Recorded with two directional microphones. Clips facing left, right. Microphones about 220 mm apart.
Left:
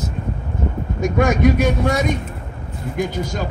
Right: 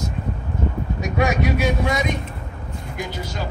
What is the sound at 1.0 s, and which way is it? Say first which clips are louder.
Speech: left 6 dB; 50° left (ahead or behind).